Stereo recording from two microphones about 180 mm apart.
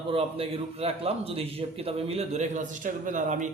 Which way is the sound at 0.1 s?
35° right (ahead or behind).